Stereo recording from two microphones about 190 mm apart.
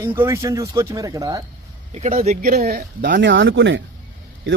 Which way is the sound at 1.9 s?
40° right (ahead or behind).